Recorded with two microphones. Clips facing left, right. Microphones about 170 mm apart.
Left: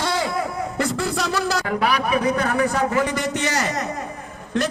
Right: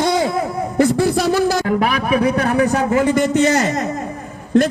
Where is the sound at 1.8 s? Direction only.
50° right (ahead or behind).